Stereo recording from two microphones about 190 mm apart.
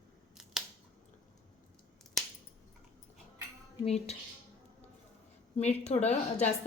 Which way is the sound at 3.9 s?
35° left (ahead or behind).